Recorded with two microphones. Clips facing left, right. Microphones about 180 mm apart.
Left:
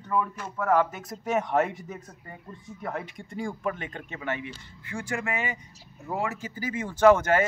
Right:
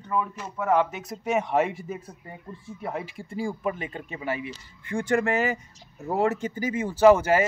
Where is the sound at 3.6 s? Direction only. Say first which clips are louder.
Right 2 dB; 10° right (ahead or behind).